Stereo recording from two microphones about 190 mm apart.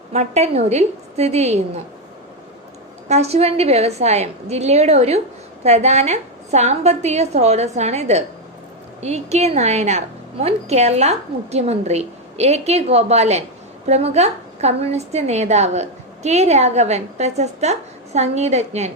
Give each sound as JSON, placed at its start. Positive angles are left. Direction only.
{"t": 0.1, "sound": "a woman's voice", "side_deg": -35}
{"t": 3.1, "sound": "a woman's voice", "side_deg": -35}